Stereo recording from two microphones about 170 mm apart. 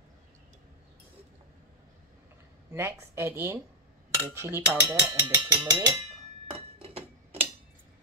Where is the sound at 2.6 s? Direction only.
15° right (ahead or behind).